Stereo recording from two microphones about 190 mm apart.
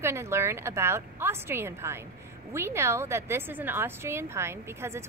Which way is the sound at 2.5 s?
15° right (ahead or behind).